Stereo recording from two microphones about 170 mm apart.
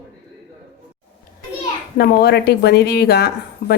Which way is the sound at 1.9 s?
70° left (ahead or behind).